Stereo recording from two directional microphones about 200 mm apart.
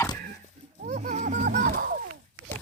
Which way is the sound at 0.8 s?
35° right (ahead or behind).